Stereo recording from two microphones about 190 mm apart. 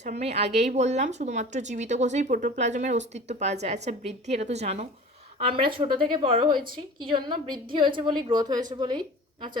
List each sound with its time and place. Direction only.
0.0 s a woman's voice: 35° right (ahead or behind)